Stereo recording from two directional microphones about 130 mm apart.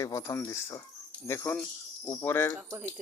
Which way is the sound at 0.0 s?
20° left (ahead or behind).